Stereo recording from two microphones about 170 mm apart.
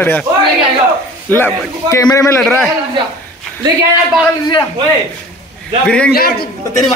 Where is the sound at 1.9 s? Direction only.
20° left (ahead or behind).